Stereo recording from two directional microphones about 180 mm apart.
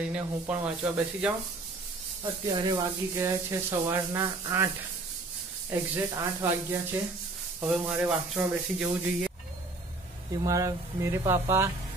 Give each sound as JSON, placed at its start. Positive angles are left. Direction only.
{"t": 0.1, "sound": "speech", "side_deg": -5}
{"t": 2.4, "sound": "rub", "side_deg": -25}
{"t": 5.7, "sound": "rub", "side_deg": -15}
{"t": 10.4, "sound": "rub", "side_deg": -20}